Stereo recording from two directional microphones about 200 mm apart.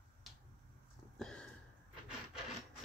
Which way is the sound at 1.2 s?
5° left (ahead or behind).